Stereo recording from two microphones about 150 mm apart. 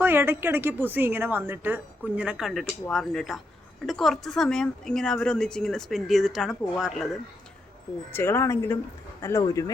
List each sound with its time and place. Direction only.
0.0 s a woman's voice: 15° right (ahead or behind)
8.1 s speech: 15° left (ahead or behind)